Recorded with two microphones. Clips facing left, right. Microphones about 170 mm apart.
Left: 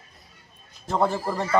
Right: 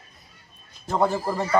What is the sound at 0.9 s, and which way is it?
Speech, centre (ahead or behind).